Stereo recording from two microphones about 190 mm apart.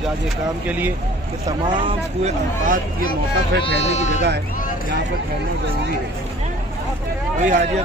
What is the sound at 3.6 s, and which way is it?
Speech, 35° left (ahead or behind).